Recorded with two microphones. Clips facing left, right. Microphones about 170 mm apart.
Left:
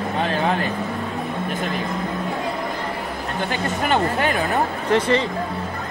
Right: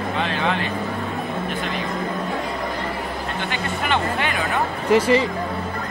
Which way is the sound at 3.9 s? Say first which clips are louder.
Left 3 dB; 45° left (ahead or behind).